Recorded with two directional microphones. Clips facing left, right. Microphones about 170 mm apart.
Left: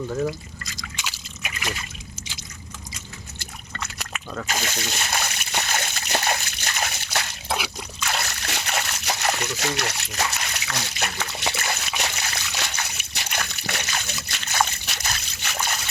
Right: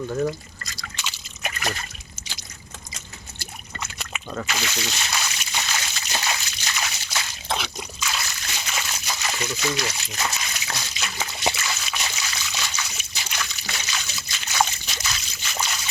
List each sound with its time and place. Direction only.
0.1 s speech: centre (ahead or behind)
1.4 s trickle: 40° right (ahead or behind)
3.8 s liquid: 5° right (ahead or behind)
4.4 s water: 45° left (ahead or behind); by 7.3 s 60° left (ahead or behind)
7.4 s a sound: 10° left (ahead or behind)
8.0 s splash: 60° left (ahead or behind)
11.5 s a sound: 60° left (ahead or behind)